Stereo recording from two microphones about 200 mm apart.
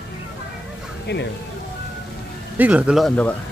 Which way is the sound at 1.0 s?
60° left (ahead or behind).